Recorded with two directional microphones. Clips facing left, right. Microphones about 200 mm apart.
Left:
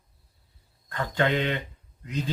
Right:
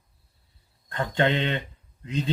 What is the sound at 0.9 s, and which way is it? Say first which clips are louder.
Speech: right 1 dB; 25° right (ahead or behind).